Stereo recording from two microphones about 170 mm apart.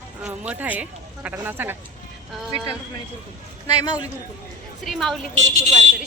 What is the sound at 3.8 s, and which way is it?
Speech, 25° left (ahead or behind).